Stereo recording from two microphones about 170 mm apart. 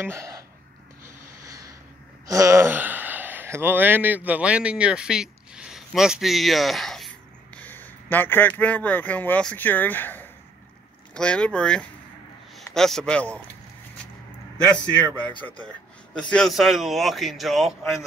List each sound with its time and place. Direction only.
0.0 s speech: 15° right (ahead or behind)
2.2 s a man's voice: 20° right (ahead or behind); by 13.3 s 5° left (ahead or behind)
15.4 s speech: 5° left (ahead or behind)